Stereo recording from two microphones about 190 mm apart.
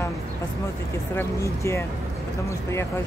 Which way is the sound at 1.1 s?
15° left (ahead or behind).